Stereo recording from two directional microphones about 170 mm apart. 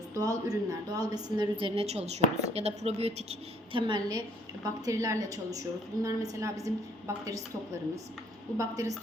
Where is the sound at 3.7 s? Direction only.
25° right (ahead or behind).